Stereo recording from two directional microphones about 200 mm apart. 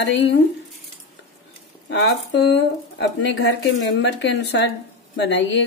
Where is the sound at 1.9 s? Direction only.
60° left (ahead or behind).